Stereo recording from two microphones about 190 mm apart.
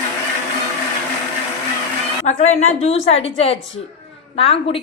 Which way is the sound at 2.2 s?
35° left (ahead or behind).